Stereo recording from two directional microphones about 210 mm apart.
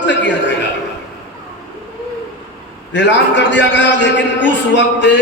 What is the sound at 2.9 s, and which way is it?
A man's voice, 55° left (ahead or behind).